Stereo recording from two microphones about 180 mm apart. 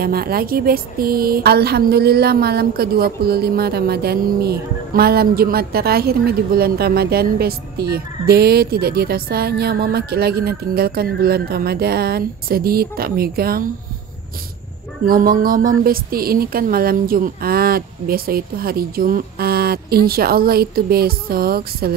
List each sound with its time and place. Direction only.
0.0 s speech: 55° right (ahead or behind)
15.0 s speech: 50° right (ahead or behind)